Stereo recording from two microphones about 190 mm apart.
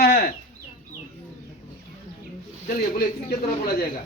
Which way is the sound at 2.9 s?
55° left (ahead or behind).